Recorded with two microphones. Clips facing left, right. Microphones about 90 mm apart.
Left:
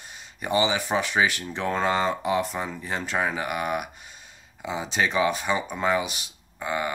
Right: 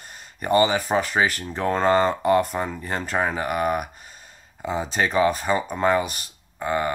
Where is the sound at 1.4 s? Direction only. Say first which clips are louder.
Right 3 dB; centre (ahead or behind).